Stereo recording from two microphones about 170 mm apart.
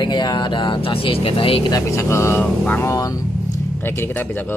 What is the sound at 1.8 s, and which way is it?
Speech, 15° left (ahead or behind).